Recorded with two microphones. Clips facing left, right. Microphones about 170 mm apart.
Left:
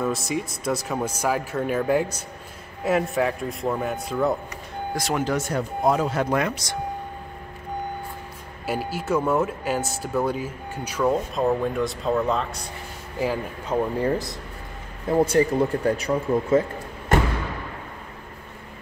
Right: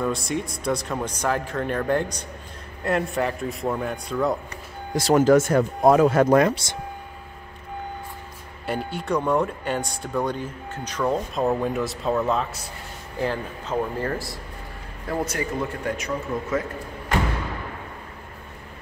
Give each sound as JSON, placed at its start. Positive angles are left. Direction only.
{"t": 0.0, "sound": "speech", "side_deg": 0}
{"t": 5.1, "sound": "speech", "side_deg": -45}
{"t": 8.6, "sound": "speech", "side_deg": 5}
{"t": 13.2, "sound": "speech", "side_deg": 10}